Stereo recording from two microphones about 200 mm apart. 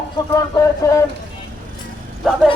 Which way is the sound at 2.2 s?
Centre (ahead or behind).